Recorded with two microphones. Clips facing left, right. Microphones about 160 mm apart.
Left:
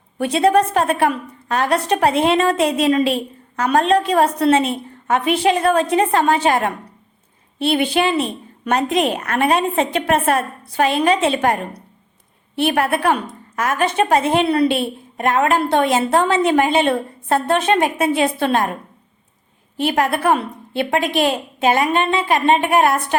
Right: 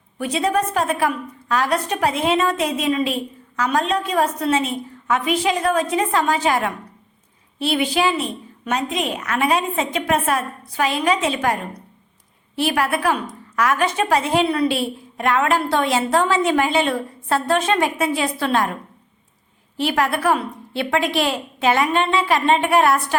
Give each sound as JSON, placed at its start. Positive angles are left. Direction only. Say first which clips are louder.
{"t": 0.2, "sound": "a woman's voice", "louder": "left 5 dB", "side_deg": 65}
{"t": 12.8, "sound": "a woman's voice", "louder": "left 2 dB", "side_deg": 55}
{"t": 19.7, "sound": "a woman's voice", "louder": "left 2 dB", "side_deg": 50}